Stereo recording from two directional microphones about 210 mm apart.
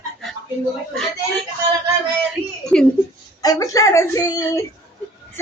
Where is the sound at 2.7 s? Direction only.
5° left (ahead or behind).